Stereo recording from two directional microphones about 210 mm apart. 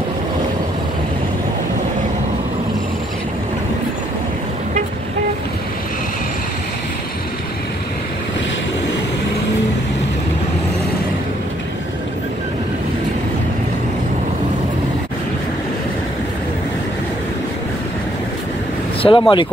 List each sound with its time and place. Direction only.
19.0 s speech: 25° left (ahead or behind)